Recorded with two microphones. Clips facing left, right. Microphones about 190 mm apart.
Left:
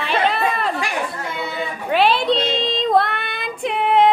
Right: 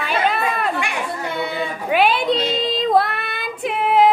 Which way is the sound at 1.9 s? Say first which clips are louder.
Even; 5° right (ahead or behind).